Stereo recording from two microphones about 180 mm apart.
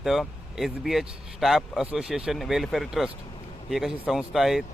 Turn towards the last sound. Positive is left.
turn(degrees=0)  # may be behind; listen again after turning